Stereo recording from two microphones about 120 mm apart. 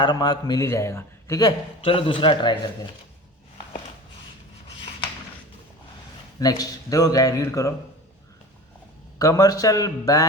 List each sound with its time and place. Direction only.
0.0 s a man's voice: 35° left (ahead or behind)
1.8 s a man's voice: 50° left (ahead or behind)
6.4 s speech: 30° left (ahead or behind)
9.1 s speech: 30° left (ahead or behind)